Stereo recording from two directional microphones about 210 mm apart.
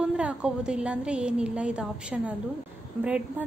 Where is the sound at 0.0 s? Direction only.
5° right (ahead or behind).